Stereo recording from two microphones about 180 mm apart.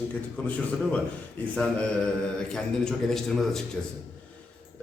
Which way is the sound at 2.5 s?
Centre (ahead or behind).